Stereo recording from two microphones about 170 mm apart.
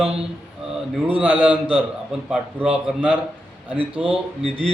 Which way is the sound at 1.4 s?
10° right (ahead or behind).